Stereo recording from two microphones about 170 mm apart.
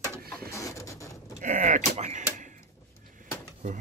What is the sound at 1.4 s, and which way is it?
Speech, 45° right (ahead or behind).